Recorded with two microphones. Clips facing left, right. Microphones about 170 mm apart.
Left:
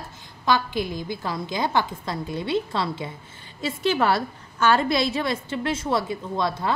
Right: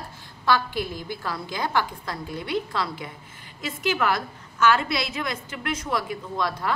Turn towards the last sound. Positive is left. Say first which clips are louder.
# left 2 dB
turn(degrees=25)  # may be behind; listen again after turning